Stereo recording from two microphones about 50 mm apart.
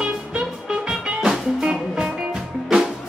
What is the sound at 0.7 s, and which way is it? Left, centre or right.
Music, centre.